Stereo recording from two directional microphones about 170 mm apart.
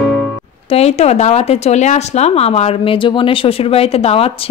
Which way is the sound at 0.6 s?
40° left (ahead or behind).